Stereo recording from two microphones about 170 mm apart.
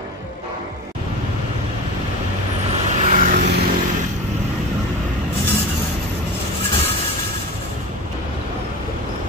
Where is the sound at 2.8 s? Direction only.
45° right (ahead or behind).